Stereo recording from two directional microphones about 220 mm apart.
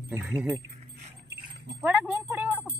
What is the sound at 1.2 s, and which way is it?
Dog, 50° right (ahead or behind).